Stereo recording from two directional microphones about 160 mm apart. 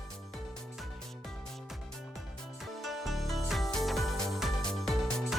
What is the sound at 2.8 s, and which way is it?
Music, centre (ahead or behind).